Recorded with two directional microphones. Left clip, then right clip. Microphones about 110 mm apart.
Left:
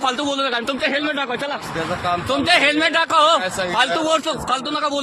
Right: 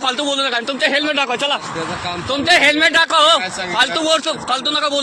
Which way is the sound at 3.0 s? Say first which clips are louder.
Right 3 dB; 20° left (ahead or behind).